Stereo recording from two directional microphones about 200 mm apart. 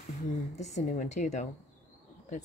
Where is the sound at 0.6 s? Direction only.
35° left (ahead or behind).